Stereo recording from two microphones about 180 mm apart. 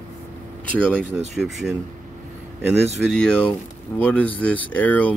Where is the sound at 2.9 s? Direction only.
Centre (ahead or behind).